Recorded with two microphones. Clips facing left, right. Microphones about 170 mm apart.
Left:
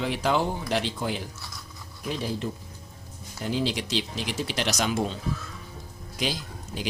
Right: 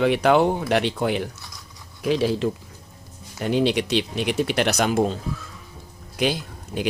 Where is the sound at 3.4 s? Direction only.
65° right (ahead or behind); by 5.2 s 45° right (ahead or behind).